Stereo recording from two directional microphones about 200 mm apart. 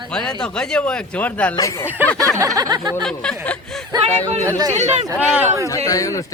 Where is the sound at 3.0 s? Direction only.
5° left (ahead or behind).